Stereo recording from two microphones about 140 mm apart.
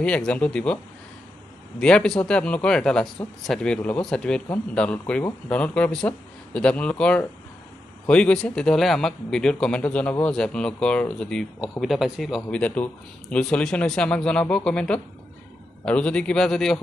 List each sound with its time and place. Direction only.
0.0 s speech: 5° left (ahead or behind)
1.8 s speech: 5° left (ahead or behind)